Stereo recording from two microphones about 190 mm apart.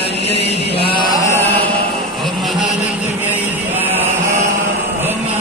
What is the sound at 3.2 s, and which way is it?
Music, 10° right (ahead or behind).